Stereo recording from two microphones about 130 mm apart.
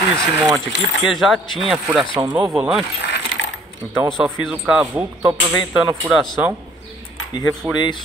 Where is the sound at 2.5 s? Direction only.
5° right (ahead or behind).